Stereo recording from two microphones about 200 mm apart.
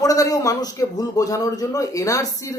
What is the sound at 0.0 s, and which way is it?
A man's voice, 15° left (ahead or behind).